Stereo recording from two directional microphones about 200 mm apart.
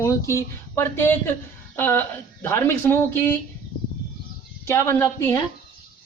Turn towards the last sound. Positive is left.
turn(degrees=10)  # may be behind; listen again after turning